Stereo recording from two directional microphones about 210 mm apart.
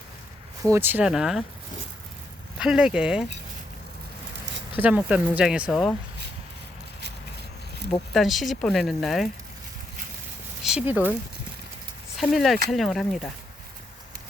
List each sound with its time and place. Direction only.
0.6 s speech: 10° right (ahead or behind)
2.6 s speech: 5° right (ahead or behind)
4.8 s speech: 5° right (ahead or behind)
8.1 s speech: centre (ahead or behind)
10.6 s speech: 5° right (ahead or behind)
12.1 s speech: centre (ahead or behind)